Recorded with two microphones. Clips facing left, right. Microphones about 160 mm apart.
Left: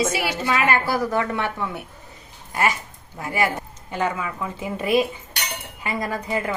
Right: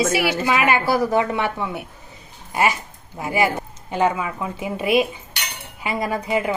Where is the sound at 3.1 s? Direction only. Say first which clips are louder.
Right 3 dB; 20° right (ahead or behind).